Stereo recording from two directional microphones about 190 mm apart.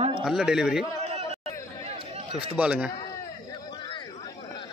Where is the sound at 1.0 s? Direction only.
35° right (ahead or behind).